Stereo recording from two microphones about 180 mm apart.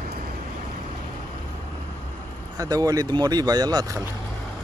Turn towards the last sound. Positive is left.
turn(degrees=-20)  # may be behind; listen again after turning